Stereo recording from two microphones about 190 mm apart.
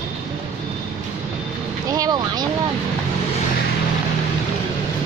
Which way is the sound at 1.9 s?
20° right (ahead or behind).